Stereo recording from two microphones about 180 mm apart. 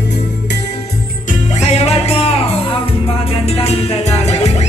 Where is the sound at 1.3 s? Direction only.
40° left (ahead or behind).